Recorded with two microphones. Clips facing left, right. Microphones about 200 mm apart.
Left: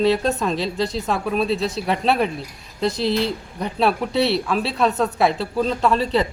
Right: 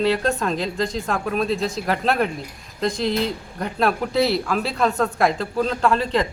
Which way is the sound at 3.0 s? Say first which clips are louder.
Left 1 dB; 35° left (ahead or behind).